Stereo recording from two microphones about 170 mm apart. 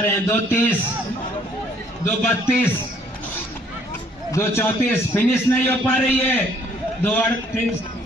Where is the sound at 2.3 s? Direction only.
10° left (ahead or behind).